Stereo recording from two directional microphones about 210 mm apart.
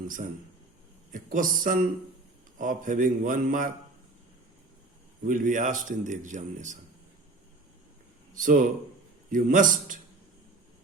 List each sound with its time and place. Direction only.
1.1 s a man's voice: 40° right (ahead or behind)
5.2 s a man's voice: 40° right (ahead or behind)
8.4 s a man's voice: 40° right (ahead or behind)